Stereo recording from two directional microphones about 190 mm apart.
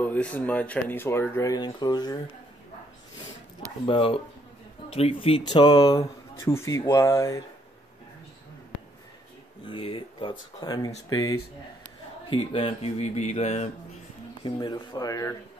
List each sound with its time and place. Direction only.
0.0 s speech: 10° left (ahead or behind)
3.8 s speech: 30° left (ahead or behind)
9.7 s speech: 30° left (ahead or behind)
14.4 s speech: 20° left (ahead or behind)